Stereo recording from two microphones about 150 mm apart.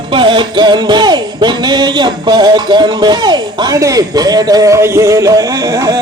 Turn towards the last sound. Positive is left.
turn(degrees=-20)  # may be behind; listen again after turning